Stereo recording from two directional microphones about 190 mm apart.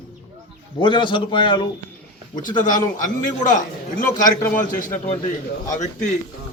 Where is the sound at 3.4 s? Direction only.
40° left (ahead or behind).